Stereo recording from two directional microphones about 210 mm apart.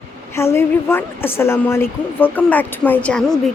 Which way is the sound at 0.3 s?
10° left (ahead or behind).